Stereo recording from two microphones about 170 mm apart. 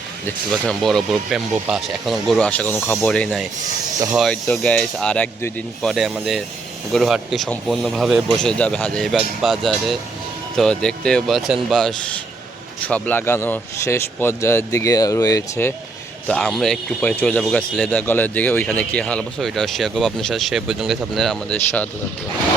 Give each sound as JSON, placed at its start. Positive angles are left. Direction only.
{"t": 0.3, "sound": "speech", "side_deg": 5}
{"t": 2.4, "sound": "speech", "side_deg": 10}
{"t": 16.2, "sound": "speech", "side_deg": 5}